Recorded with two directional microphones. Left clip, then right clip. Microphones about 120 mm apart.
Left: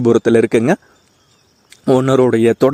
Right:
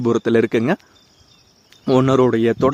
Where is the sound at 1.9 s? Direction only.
50° left (ahead or behind).